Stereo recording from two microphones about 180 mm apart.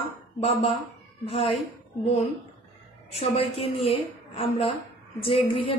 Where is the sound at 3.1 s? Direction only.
35° left (ahead or behind).